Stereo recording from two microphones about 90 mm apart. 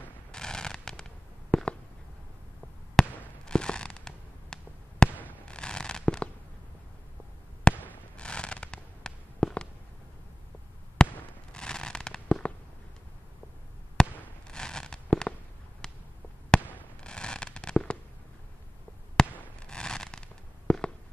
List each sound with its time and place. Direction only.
0.3 s fireworks: 10° left (ahead or behind)
3.0 s fireworks: 10° left (ahead or behind)
5.1 s fireworks: 20° right (ahead or behind)
5.4 s a sound: 10° left (ahead or behind)
7.7 s fireworks: 10° left (ahead or behind)
11.0 s fireworks: 10° left (ahead or behind)
11.5 s a sound: 10° left (ahead or behind)
14.0 s fireworks: 10° left (ahead or behind)
14.5 s a sound: 10° left (ahead or behind)
17.0 s fireworks: 10° left (ahead or behind)
19.4 s fireworks: 10° left (ahead or behind)